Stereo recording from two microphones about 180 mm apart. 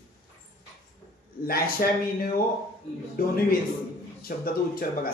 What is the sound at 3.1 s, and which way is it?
A man's voice, 55° left (ahead or behind).